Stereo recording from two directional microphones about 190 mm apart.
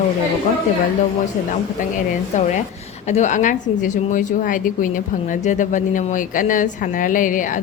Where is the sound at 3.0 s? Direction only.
40° left (ahead or behind).